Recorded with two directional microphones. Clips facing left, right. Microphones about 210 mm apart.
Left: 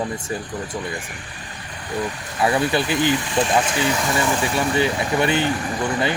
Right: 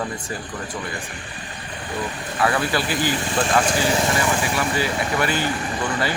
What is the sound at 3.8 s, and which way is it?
Speech, 30° right (ahead or behind).